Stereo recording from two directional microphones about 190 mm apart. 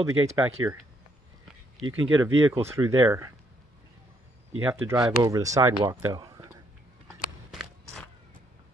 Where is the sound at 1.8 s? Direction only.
Centre (ahead or behind).